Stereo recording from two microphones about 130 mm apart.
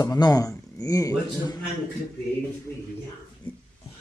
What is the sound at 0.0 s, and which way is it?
Speech, 30° left (ahead or behind).